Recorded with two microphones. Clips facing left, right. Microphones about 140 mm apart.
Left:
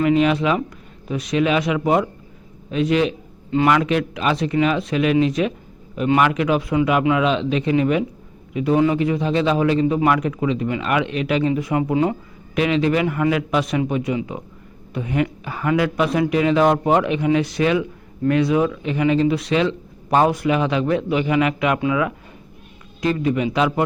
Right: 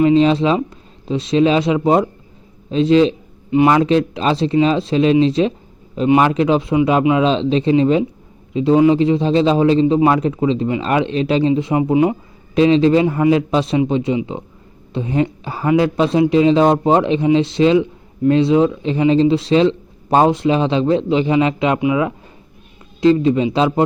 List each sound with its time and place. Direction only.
0.0 s speech: 25° right (ahead or behind)
12.5 s speech: 30° right (ahead or behind)